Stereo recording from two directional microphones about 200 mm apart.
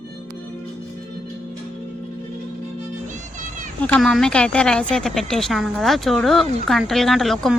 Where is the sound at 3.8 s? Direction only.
5° left (ahead or behind).